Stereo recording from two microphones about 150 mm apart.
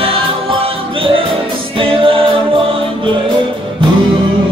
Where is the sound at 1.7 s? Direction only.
35° right (ahead or behind).